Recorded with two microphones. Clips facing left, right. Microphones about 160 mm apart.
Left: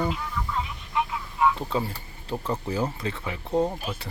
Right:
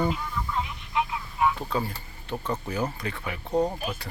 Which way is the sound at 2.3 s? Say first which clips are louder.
Left 1 dB; 10° left (ahead or behind).